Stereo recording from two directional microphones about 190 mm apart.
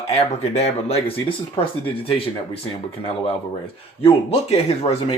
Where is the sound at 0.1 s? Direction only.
35° left (ahead or behind).